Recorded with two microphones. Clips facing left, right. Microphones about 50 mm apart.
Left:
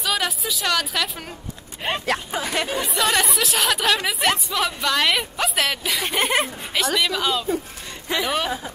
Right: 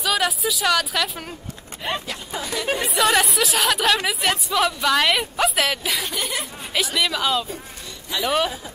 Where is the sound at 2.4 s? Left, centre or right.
Left.